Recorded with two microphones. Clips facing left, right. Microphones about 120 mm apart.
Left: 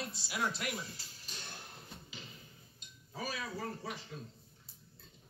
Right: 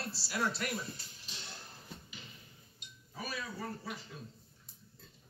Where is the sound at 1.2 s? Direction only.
50° left (ahead or behind).